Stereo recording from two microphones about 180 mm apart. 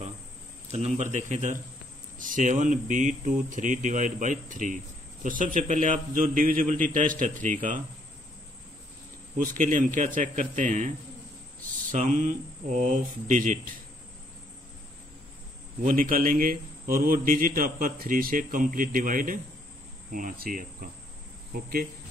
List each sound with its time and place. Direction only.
0.7 s a man's voice: 35° right (ahead or behind)
9.4 s a man's voice: 45° right (ahead or behind)
11.9 s a man's voice: 45° right (ahead or behind)
15.8 s a man's voice: 50° right (ahead or behind)